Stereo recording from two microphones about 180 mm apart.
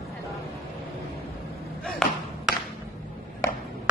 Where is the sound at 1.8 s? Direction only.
Centre (ahead or behind).